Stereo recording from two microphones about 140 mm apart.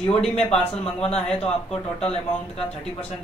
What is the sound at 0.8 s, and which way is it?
Speech, 45° left (ahead or behind).